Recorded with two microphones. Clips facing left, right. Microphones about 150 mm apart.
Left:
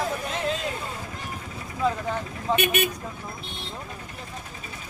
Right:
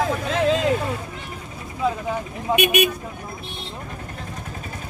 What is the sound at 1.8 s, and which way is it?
Speech, 10° right (ahead or behind).